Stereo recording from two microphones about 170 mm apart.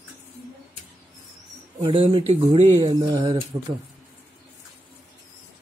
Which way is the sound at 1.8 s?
30° right (ahead or behind).